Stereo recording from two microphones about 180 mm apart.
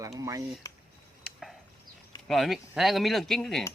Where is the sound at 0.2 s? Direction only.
20° right (ahead or behind).